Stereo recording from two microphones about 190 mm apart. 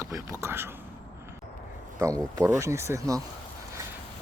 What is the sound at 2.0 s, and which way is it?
Speech, 15° right (ahead or behind).